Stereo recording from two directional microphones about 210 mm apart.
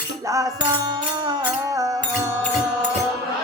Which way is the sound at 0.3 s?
15° right (ahead or behind).